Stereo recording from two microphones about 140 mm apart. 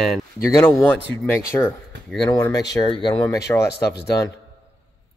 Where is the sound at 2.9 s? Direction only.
35° left (ahead or behind).